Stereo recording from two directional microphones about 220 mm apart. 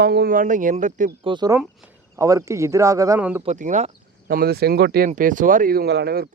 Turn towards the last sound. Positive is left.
turn(degrees=-45)  # may be behind; listen again after turning